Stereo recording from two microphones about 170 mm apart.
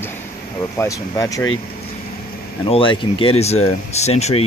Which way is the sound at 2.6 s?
30° left (ahead or behind).